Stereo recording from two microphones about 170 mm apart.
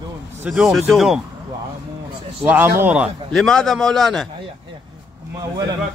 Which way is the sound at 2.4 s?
10° right (ahead or behind).